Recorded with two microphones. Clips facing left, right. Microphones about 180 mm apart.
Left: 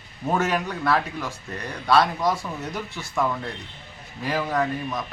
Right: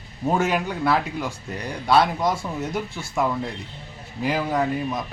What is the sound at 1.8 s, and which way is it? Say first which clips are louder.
Speech: right 1 dB; 25° right (ahead or behind).